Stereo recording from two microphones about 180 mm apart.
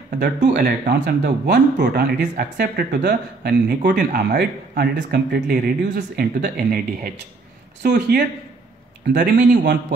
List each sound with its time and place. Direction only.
0.2 s speech: 45° right (ahead or behind)